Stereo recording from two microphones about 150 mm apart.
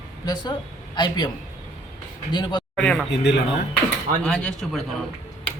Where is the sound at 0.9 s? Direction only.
30° left (ahead or behind).